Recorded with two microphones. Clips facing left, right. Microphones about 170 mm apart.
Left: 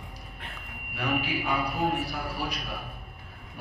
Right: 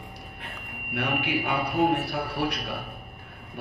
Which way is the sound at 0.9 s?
65° right (ahead or behind).